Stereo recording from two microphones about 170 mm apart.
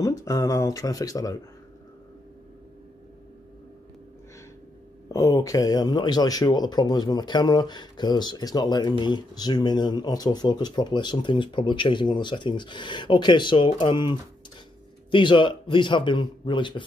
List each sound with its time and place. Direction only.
0.0 s speech: 20° left (ahead or behind)
5.1 s speech: 20° left (ahead or behind)